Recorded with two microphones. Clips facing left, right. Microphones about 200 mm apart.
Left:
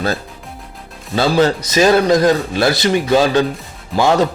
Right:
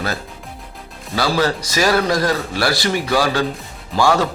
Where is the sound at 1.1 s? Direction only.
25° left (ahead or behind).